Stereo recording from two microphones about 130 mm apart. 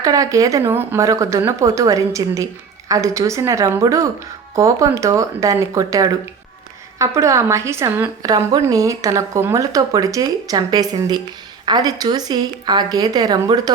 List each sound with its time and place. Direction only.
0.0 s a woman's voice: 25° right (ahead or behind)